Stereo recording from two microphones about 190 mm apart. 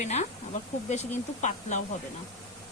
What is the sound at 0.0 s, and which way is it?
Speech, 35° left (ahead or behind).